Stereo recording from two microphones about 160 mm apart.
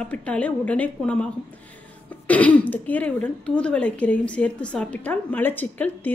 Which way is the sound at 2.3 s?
10° left (ahead or behind).